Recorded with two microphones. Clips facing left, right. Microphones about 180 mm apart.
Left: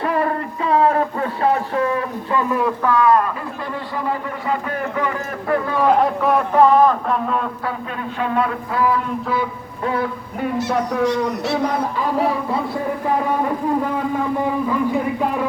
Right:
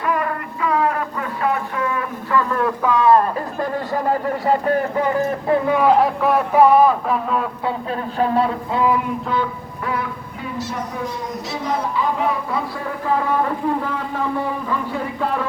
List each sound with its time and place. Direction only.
0.0 s a sound: 30° left (ahead or behind)
2.3 s speech: 20° left (ahead or behind)
2.8 s speech: 20° right (ahead or behind)
3.6 s a man's voice: 45° right (ahead or behind)
5.5 s speech: 15° right (ahead or behind)
5.9 s a man's voice: centre (ahead or behind)
8.2 s speech: 30° right (ahead or behind)
10.4 s speech: 60° left (ahead or behind)